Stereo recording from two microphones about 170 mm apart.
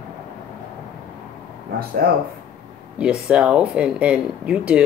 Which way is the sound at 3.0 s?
5° right (ahead or behind).